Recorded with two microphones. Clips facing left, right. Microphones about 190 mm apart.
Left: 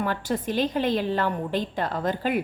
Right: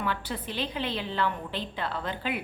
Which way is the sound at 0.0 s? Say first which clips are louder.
Left 6 dB; 45° left (ahead or behind).